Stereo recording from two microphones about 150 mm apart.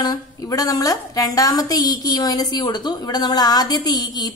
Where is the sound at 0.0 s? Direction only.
25° left (ahead or behind).